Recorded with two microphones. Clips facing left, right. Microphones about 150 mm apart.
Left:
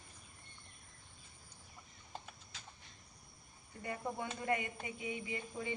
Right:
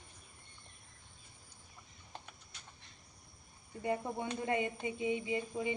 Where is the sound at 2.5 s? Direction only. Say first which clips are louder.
Left 4 dB; 90° left.